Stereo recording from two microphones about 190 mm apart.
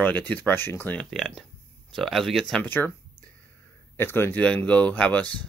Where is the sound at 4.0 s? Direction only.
10° left (ahead or behind).